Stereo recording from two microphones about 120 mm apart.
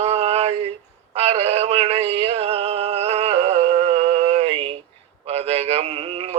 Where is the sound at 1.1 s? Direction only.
55° right (ahead or behind).